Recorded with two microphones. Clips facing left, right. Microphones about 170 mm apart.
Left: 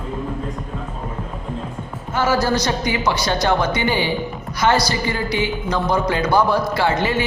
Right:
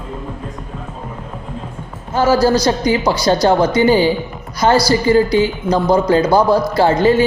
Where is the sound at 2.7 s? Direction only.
35° right (ahead or behind).